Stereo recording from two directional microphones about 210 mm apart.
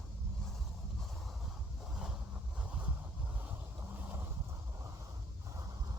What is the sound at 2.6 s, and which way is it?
Vehicle, 5° right (ahead or behind).